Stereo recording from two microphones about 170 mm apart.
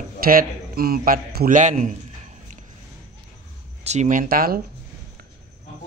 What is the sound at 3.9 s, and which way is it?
Speech, 45° right (ahead or behind).